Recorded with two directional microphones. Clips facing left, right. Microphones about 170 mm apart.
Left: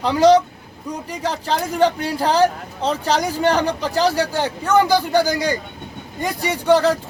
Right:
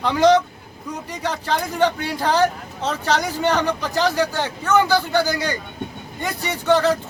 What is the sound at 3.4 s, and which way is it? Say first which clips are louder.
Speech: left 2 dB; 35° left (ahead or behind).